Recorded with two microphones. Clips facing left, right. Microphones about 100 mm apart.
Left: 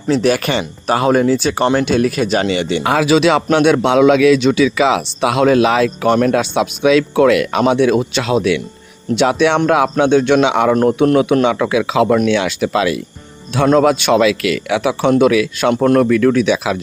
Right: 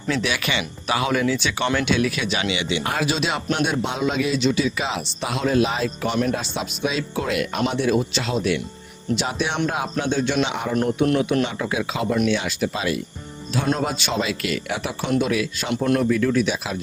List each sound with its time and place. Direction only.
0.1 s speech: 40° left (ahead or behind)
2.8 s a man's voice: 90° left
6.1 s speech: 55° left (ahead or behind)
6.3 s speech: 80° left
7.7 s a man's voice: 70° left (ahead or behind); by 9.9 s 90° left
9.9 s a man's voice: 70° left (ahead or behind); by 10.8 s 85° left
11.0 s a man's voice: 70° left (ahead or behind)
11.4 s speech: 90° left
13.7 s a man's voice: 70° left (ahead or behind)